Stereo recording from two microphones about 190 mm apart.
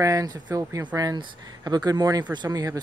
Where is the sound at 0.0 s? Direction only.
20° right (ahead or behind).